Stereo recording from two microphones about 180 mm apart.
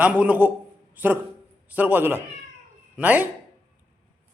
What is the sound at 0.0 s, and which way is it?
A man's voice, 10° right (ahead or behind).